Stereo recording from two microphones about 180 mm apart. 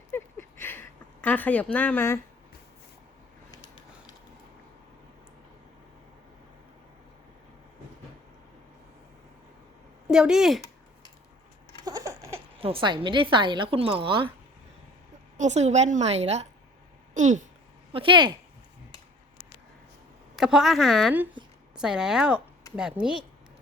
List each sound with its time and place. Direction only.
0.1 s a sound: 10° left (ahead or behind)
10.1 s a woman's voice: 5° right (ahead or behind)
11.9 s patter: 20° right (ahead or behind)
12.5 s a woman's voice: 30° right (ahead or behind)
15.4 s a woman's voice: 40° right (ahead or behind)
17.9 s a woman's voice: 25° right (ahead or behind)
20.3 s a woman's voice: 5° right (ahead or behind)